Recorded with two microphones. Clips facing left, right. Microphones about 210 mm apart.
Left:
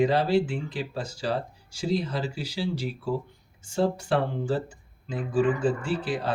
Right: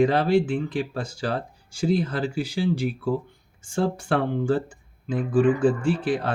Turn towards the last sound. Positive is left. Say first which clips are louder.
# right 5 dB
turn(degrees=-50)  # may be behind; listen again after turning